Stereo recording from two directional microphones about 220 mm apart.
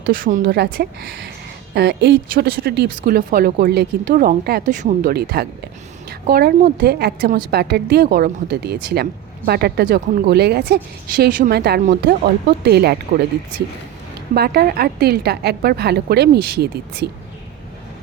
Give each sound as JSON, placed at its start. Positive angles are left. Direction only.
{"t": 0.0, "sound": "speech", "side_deg": -40}
{"t": 14.3, "sound": "speech", "side_deg": -45}